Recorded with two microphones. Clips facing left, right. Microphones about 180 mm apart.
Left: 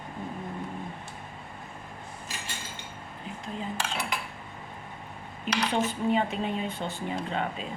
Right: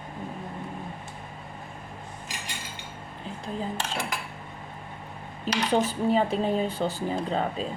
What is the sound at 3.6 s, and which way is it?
Cutlery, 45° right (ahead or behind).